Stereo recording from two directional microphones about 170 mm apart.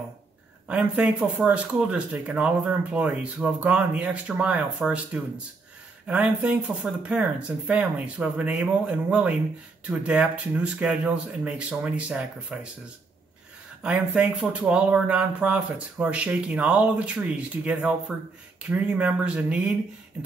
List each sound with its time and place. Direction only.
0.7 s speech: 5° right (ahead or behind)
13.8 s speech: 5° right (ahead or behind)